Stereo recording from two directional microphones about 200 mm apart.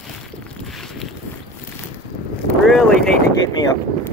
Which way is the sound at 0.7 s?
Centre (ahead or behind).